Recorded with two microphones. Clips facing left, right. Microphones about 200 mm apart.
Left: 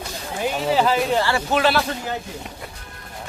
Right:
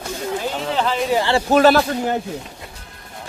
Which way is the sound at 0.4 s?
5° left (ahead or behind).